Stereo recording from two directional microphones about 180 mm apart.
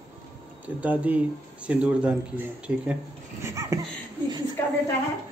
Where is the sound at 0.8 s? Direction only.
10° right (ahead or behind).